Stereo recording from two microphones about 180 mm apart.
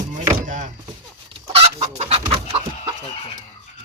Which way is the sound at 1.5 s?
35° right (ahead or behind).